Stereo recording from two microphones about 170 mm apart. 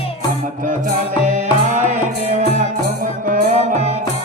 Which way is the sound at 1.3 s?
50° right (ahead or behind).